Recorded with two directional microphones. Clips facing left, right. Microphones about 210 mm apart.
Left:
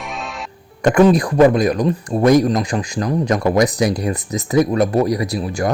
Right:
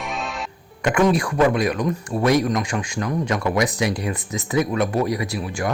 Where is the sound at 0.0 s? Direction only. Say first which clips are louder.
Even; centre (ahead or behind).